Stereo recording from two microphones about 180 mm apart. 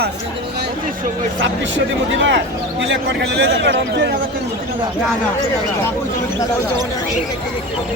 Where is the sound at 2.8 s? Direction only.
75° right (ahead or behind).